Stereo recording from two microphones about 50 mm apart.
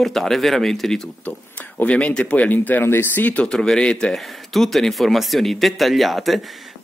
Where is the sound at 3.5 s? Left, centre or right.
Centre.